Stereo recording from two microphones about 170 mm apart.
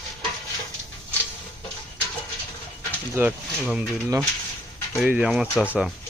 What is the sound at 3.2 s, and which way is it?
Speech, 5° right (ahead or behind).